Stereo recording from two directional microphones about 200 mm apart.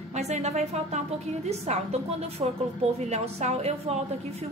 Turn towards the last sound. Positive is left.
turn(degrees=-35)  # may be behind; listen again after turning